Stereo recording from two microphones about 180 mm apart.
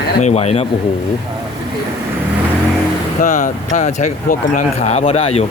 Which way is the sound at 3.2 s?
45° left (ahead or behind).